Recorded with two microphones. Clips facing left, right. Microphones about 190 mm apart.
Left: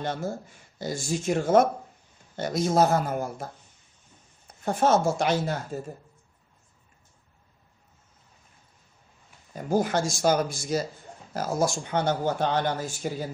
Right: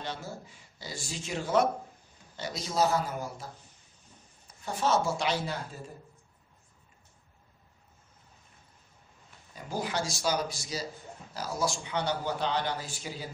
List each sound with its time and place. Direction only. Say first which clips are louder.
0.0 s speech: left 8 dB; 50° left (ahead or behind)
4.6 s speech: left 6 dB; 50° left (ahead or behind)
9.5 s speech: left 9 dB; 50° left (ahead or behind)